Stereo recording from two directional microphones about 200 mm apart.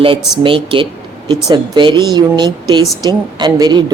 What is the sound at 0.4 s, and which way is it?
A woman's voice, 25° right (ahead or behind).